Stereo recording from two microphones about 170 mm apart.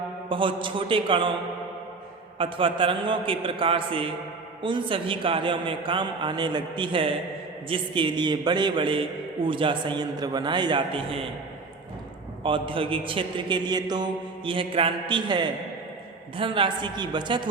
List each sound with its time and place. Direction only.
0.3 s a man's voice: 30° right (ahead or behind)
2.4 s a man's voice: 30° right (ahead or behind)
12.4 s a man's voice: 30° right (ahead or behind)